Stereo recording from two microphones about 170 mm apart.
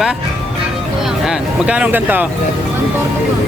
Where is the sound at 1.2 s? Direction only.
5° right (ahead or behind).